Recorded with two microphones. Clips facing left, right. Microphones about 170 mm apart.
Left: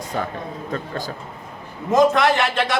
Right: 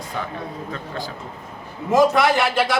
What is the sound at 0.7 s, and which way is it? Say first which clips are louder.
Speech: left 3 dB; 45° left (ahead or behind).